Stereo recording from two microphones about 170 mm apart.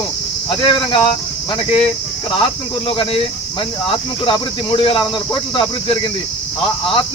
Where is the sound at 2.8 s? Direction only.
30° left (ahead or behind).